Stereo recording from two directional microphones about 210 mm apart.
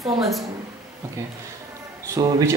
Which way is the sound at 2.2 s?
15° right (ahead or behind).